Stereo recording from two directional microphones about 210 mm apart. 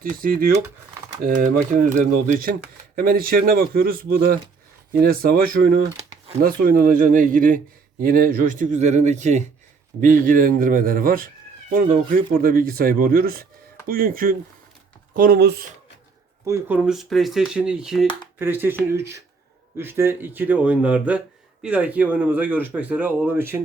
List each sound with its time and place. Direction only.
0.0 s speech: 40° right (ahead or behind)
16.5 s speech: 10° right (ahead or behind)